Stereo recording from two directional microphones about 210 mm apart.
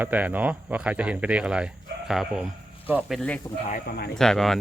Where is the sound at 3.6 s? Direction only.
40° left (ahead or behind).